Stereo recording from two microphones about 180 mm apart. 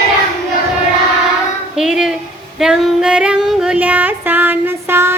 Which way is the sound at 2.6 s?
5° right (ahead or behind).